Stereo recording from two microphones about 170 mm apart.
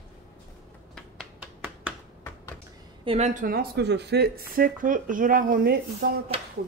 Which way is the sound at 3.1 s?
40° right (ahead or behind).